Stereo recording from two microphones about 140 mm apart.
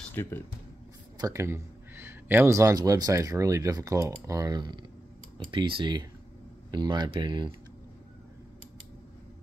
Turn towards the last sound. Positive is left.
turn(degrees=-35)  # may be behind; listen again after turning